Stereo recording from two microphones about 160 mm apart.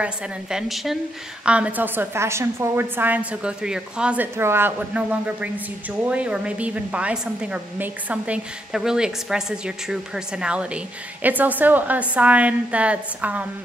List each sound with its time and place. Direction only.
0.0 s a woman's voice: 5° right (ahead or behind)